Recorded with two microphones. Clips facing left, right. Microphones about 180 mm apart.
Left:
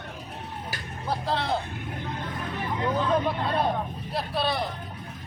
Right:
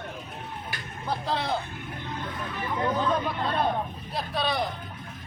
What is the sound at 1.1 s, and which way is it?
Speech, centre (ahead or behind).